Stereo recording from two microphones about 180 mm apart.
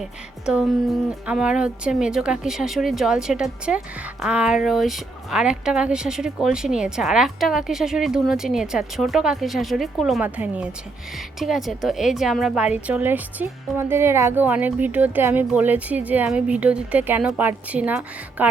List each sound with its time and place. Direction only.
0.4 s speech: centre (ahead or behind)